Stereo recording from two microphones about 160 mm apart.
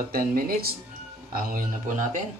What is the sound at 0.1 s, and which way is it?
Speech, 65° right (ahead or behind).